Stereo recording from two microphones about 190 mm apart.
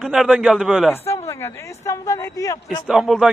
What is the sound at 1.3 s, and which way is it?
Speech, 15° left (ahead or behind).